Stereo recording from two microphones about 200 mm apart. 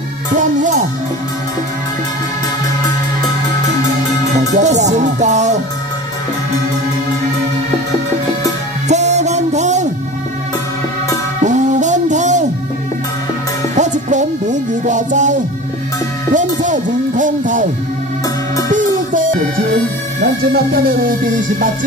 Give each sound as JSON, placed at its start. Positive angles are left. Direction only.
{"t": 0.4, "sound": "music", "side_deg": -40}
{"t": 4.6, "sound": "music", "side_deg": -35}
{"t": 8.8, "sound": "music", "side_deg": -35}
{"t": 11.4, "sound": "music", "side_deg": -35}
{"t": 13.7, "sound": "music", "side_deg": -35}
{"t": 16.3, "sound": "music", "side_deg": -40}
{"t": 18.7, "sound": "music", "side_deg": -40}
{"t": 20.2, "sound": "speech", "side_deg": -45}